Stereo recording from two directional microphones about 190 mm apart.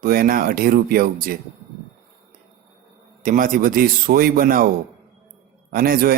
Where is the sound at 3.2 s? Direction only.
45° right (ahead or behind).